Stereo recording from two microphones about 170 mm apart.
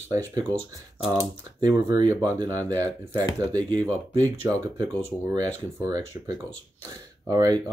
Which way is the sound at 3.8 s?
10° left (ahead or behind).